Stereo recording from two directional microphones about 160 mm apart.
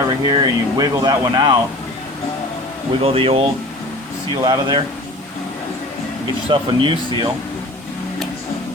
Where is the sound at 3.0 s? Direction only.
35° right (ahead or behind).